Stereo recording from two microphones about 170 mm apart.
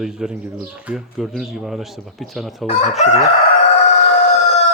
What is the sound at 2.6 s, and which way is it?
Chicken, 40° left (ahead or behind).